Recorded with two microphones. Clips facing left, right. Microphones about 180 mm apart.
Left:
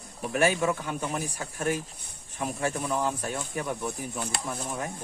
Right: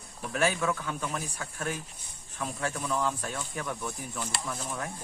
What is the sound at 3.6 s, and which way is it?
Speech, 25° left (ahead or behind).